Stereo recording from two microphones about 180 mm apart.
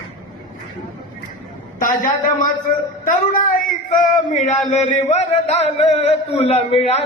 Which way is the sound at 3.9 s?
40° left (ahead or behind).